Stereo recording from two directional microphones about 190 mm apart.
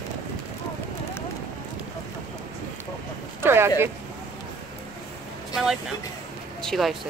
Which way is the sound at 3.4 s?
10° right (ahead or behind).